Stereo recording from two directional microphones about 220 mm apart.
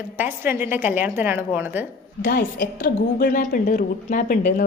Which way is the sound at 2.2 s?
55° left (ahead or behind).